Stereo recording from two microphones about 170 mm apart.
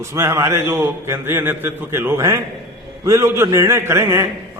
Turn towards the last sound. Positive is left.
turn(degrees=-15)  # may be behind; listen again after turning